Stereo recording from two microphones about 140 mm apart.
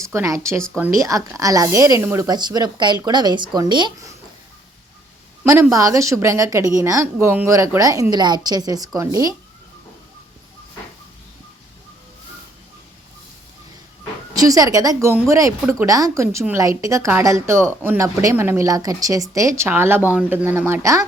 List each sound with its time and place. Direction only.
0.0 s speech: 20° right (ahead or behind)
5.7 s speech: 25° right (ahead or behind)
14.3 s speech: 25° right (ahead or behind)